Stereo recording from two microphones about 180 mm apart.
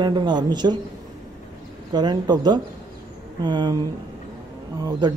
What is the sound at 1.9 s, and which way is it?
A woman's voice, 25° right (ahead or behind).